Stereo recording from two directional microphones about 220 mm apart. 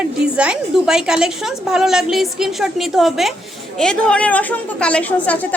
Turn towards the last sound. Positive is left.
turn(degrees=5)  # may be behind; listen again after turning